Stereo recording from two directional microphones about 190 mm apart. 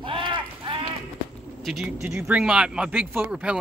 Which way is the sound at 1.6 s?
5° right (ahead or behind).